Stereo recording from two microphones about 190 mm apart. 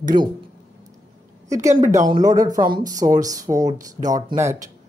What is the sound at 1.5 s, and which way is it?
Speech, 15° right (ahead or behind).